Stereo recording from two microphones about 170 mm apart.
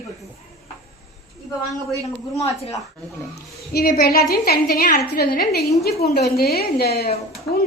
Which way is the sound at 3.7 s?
65° left (ahead or behind).